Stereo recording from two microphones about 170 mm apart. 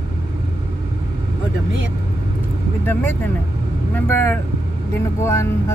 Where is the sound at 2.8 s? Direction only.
10° left (ahead or behind).